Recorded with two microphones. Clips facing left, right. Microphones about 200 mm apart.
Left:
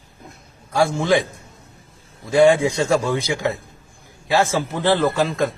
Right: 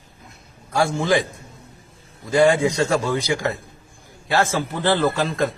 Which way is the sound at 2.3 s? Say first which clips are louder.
Left 2 dB; 15° left (ahead or behind).